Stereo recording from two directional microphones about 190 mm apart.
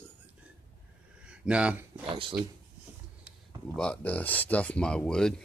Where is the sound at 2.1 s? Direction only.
25° right (ahead or behind).